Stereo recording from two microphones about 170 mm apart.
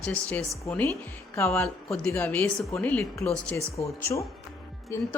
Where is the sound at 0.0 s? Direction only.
10° left (ahead or behind).